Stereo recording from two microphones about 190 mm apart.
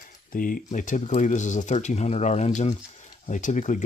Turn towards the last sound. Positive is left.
turn(degrees=40)  # may be behind; listen again after turning